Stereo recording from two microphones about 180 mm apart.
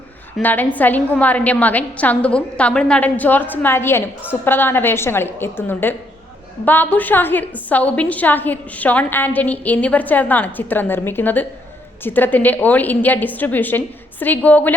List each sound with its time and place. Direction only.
0.3 s a woman's voice: 10° left (ahead or behind)